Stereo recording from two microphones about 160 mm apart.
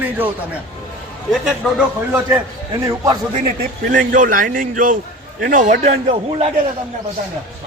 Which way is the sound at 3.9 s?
55° right (ahead or behind).